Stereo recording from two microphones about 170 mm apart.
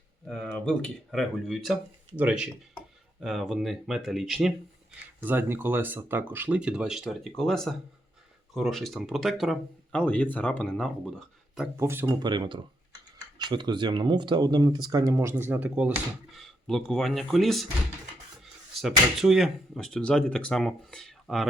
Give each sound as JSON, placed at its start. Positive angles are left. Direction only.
{"t": 0.3, "sound": "speech", "side_deg": 5}
{"t": 5.2, "sound": "speech", "side_deg": -10}
{"t": 11.8, "sound": "speech", "side_deg": -15}
{"t": 12.2, "sound": "speech", "side_deg": -25}
{"t": 18.7, "sound": "speech", "side_deg": 0}